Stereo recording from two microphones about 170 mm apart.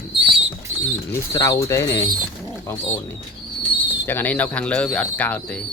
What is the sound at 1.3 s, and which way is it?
Speech, 20° left (ahead or behind).